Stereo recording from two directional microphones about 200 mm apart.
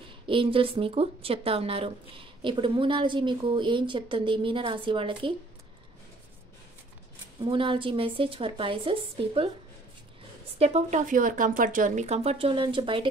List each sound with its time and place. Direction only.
0.3 s a woman's voice: 25° right (ahead or behind)
7.3 s a woman's voice: 25° right (ahead or behind)
10.6 s speech: 35° right (ahead or behind)